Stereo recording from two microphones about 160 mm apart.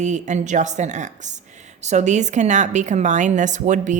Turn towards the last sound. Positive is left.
turn(degrees=-50)  # may be behind; listen again after turning